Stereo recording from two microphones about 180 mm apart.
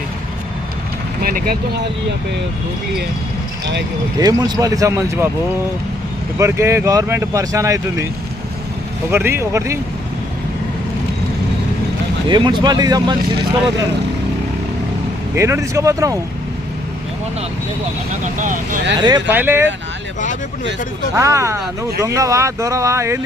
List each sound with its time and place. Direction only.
1.2 s speech: 55° right (ahead or behind)
4.2 s speech: 20° right (ahead or behind)
6.4 s speech: 15° right (ahead or behind)
9.1 s speech: 15° right (ahead or behind)
12.3 s speech: 25° right (ahead or behind)
15.4 s speech: 15° right (ahead or behind)
18.1 s speech: 45° right (ahead or behind)
18.9 s speech: 25° right (ahead or behind)
19.3 s speech: 10° right (ahead or behind)
21.2 s speech: 15° right (ahead or behind)